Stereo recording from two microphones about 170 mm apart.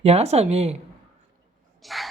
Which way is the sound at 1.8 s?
Centre (ahead or behind).